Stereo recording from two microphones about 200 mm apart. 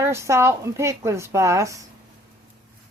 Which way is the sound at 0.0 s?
15° right (ahead or behind).